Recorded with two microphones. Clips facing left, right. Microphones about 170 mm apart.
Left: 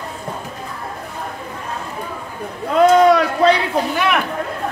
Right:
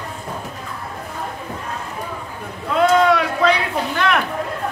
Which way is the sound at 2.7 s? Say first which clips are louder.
Left 4 dB; 40° left (ahead or behind).